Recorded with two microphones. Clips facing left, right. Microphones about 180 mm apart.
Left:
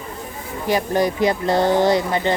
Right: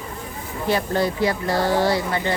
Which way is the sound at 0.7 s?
15° left (ahead or behind).